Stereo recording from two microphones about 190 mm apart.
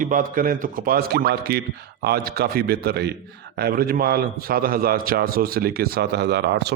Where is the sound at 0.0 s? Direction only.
45° right (ahead or behind).